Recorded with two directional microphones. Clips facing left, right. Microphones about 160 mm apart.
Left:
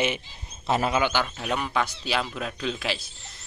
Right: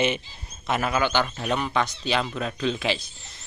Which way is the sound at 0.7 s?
30° left (ahead or behind).